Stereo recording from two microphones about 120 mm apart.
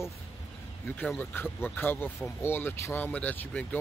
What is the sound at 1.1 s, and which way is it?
Speech, 15° left (ahead or behind).